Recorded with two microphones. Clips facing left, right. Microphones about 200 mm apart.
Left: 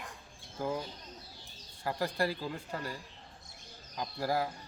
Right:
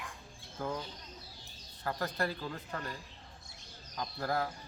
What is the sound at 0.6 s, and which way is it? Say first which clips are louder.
Speech: left 3 dB; 10° left (ahead or behind).